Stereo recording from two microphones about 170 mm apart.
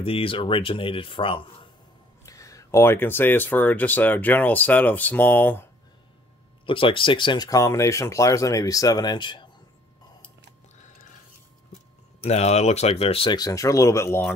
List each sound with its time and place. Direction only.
0.0 s speech: 30° left (ahead or behind)
2.2 s speech: 20° left (ahead or behind)
6.6 s speech: 30° left (ahead or behind)
12.2 s speech: 40° left (ahead or behind); by 14.3 s 15° left (ahead or behind)